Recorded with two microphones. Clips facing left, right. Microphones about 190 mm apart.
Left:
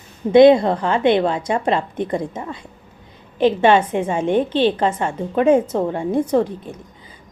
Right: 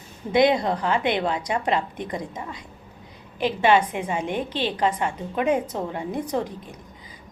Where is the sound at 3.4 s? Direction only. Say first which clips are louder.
Left 5 dB; 25° left (ahead or behind).